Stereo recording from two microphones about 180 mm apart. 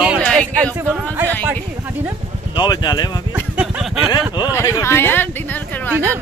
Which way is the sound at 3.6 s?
5° right (ahead or behind).